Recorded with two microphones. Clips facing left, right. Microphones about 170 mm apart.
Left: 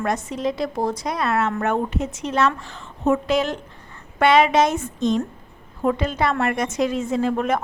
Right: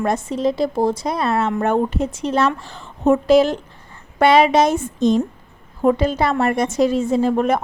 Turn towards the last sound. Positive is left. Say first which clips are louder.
# right 4 dB
turn(degrees=-35)  # may be behind; listen again after turning